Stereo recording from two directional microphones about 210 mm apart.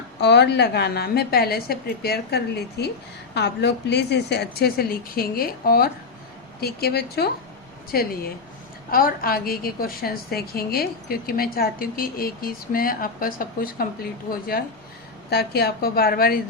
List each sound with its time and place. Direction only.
0.2 s a woman's voice: 55° left (ahead or behind)